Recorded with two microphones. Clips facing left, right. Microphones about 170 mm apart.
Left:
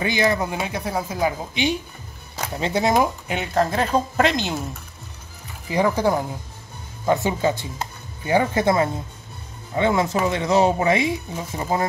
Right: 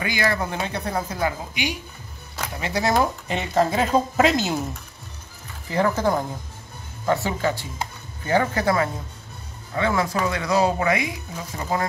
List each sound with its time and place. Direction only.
0.0 s speech: 20° left (ahead or behind)
1.5 s speech: 25° left (ahead or behind)
3.3 s speech: centre (ahead or behind)
5.7 s speech: 15° left (ahead or behind)